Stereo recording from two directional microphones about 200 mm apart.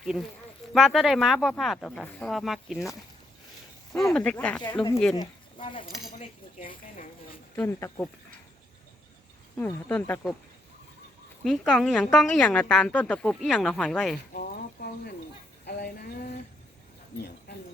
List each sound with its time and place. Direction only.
0.0 s a woman's voice: 5° right (ahead or behind)
4.1 s speech: 5° left (ahead or behind)
4.6 s speech: 20° left (ahead or behind)
6.1 s speech: 40° left (ahead or behind)
7.5 s speech: 10° left (ahead or behind)
9.6 s speech: 10° left (ahead or behind)
11.4 s a woman's voice: centre (ahead or behind)
14.3 s a sound: 50° left (ahead or behind)